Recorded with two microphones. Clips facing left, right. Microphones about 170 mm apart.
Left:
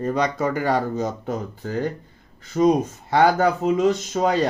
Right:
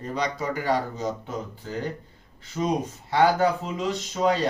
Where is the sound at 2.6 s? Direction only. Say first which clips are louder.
Left 8 dB; 50° left (ahead or behind).